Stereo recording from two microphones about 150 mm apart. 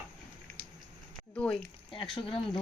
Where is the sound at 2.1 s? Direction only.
35° left (ahead or behind).